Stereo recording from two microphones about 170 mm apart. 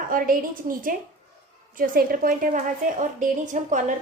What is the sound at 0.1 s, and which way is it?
A woman's voice, 55° right (ahead or behind).